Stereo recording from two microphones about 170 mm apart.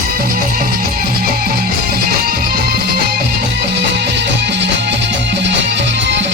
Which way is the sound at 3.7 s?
90° right.